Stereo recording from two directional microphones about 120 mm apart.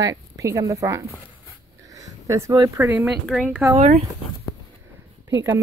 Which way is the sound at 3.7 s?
60° right (ahead or behind).